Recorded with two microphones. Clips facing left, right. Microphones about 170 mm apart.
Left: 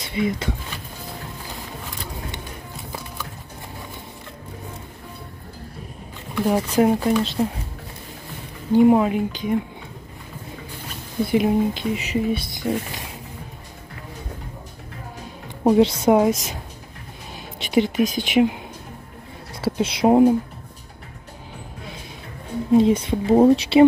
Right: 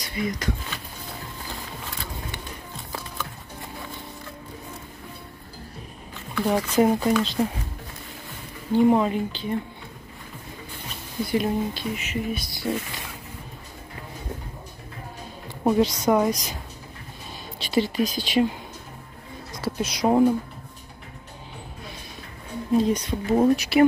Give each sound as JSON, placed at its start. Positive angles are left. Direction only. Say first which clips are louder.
{"t": 0.0, "sound": "speech", "louder": "left 5 dB", "side_deg": 25}
{"t": 6.5, "sound": "speech", "louder": "left 2 dB", "side_deg": 10}
{"t": 8.7, "sound": "speech", "louder": "left 4 dB", "side_deg": 10}
{"t": 11.2, "sound": "speech", "louder": "left 5 dB", "side_deg": 20}
{"t": 15.6, "sound": "speech", "louder": "left 5 dB", "side_deg": 20}
{"t": 17.6, "sound": "speech", "louder": "left 4 dB", "side_deg": 20}
{"t": 19.6, "sound": "speech", "louder": "left 5 dB", "side_deg": 25}
{"t": 22.7, "sound": "speech", "louder": "left 5 dB", "side_deg": 25}